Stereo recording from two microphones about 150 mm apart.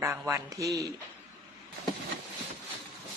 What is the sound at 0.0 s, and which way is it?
Speech, 20° right (ahead or behind).